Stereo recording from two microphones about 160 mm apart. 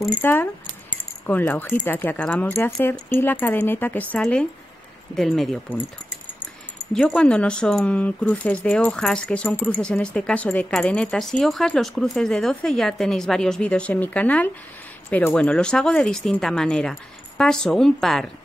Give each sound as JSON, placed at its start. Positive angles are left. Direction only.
{"t": 0.2, "sound": "speech", "side_deg": 10}